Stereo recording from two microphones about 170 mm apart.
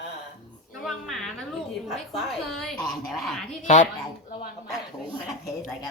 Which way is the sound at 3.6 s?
50° left (ahead or behind).